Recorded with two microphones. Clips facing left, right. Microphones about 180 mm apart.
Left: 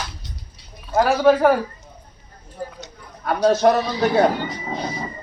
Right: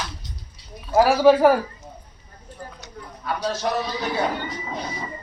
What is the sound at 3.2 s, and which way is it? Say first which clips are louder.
A man's voice: left 9 dB; 55° left (ahead or behind).